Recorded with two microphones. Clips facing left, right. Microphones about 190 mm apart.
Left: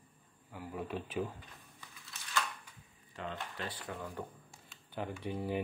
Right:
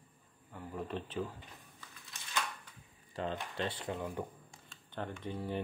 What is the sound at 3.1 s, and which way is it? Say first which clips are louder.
Speech: right 4 dB; 35° right (ahead or behind).